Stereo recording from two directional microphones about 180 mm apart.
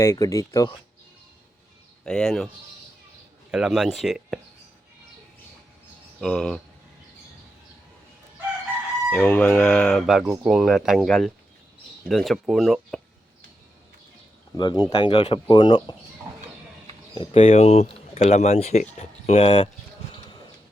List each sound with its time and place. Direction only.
0.0 s speech: 15° left (ahead or behind)
2.0 s speech: 5° left (ahead or behind)
3.5 s speech: 5° right (ahead or behind)
6.1 s speech: 5° left (ahead or behind)
9.0 s speech: 5° left (ahead or behind)
14.5 s speech: 20° left (ahead or behind)
17.2 s speech: 30° left (ahead or behind)